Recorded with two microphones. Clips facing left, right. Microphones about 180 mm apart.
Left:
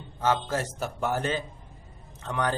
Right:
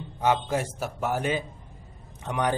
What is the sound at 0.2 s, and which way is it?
A man's voice, 15° right (ahead or behind).